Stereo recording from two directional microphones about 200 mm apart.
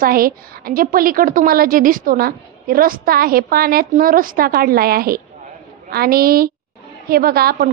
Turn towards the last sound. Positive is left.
turn(degrees=-50)  # may be behind; listen again after turning